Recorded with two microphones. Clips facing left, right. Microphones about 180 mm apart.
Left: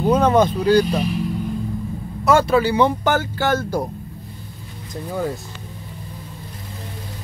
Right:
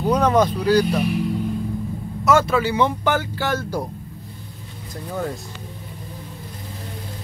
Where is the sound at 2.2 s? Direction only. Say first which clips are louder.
Left 2 dB; 35° left (ahead or behind); by 3.8 s 50° left (ahead or behind).